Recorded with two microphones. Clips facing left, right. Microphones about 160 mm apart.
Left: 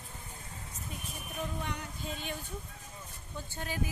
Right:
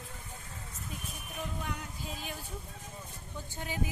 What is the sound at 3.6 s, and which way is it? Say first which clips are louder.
Speech: even; 15° right (ahead or behind).